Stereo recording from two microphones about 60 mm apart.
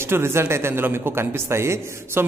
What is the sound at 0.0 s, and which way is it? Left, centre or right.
A man's voice, right.